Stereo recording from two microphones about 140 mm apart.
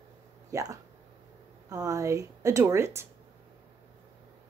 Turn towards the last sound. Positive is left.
turn(degrees=-20)  # may be behind; listen again after turning